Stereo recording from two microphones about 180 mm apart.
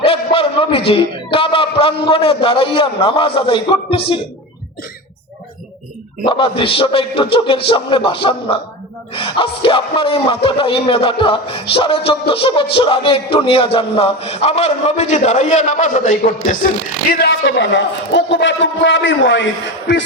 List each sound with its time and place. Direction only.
0.0 s a sound: 30° left (ahead or behind)
0.9 s a man's voice: 30° left (ahead or behind)
6.2 s a man's voice: 30° left (ahead or behind); by 16.6 s 45° left (ahead or behind)
17.1 s a man's voice: 60° left (ahead or behind); by 20.1 s 90° left